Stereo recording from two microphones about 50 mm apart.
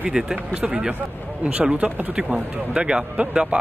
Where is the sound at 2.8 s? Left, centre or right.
Right.